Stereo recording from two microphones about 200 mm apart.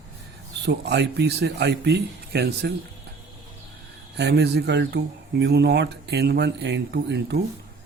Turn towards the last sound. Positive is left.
turn(degrees=-55)  # may be behind; listen again after turning